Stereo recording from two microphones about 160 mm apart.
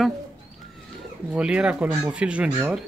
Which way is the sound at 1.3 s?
5° right (ahead or behind).